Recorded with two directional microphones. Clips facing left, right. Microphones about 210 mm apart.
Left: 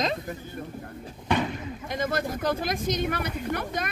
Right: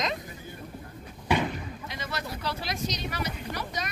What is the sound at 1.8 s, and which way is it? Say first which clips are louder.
Speech: left 11 dB; 50° left (ahead or behind).